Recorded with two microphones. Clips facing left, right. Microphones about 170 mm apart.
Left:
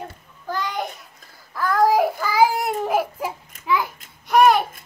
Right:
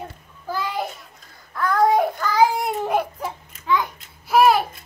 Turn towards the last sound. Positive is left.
turn(degrees=-5)  # may be behind; listen again after turning